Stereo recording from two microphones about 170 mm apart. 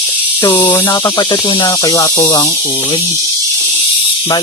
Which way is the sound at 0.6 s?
20° left (ahead or behind).